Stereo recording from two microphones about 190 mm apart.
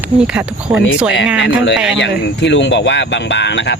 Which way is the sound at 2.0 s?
70° left (ahead or behind).